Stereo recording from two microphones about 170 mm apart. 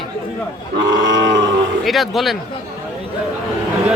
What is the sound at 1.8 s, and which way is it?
Speech, centre (ahead or behind).